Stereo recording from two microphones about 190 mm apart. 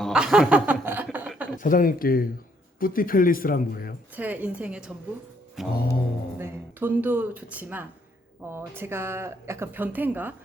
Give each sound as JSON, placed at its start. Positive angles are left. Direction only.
{"t": 0.0, "sound": "chuckle", "side_deg": -5}
{"t": 1.5, "sound": "speech", "side_deg": 45}
{"t": 4.1, "sound": "a woman's voice", "side_deg": -10}
{"t": 5.6, "sound": "mantra", "side_deg": 0}
{"t": 6.4, "sound": "a woman's voice", "side_deg": -10}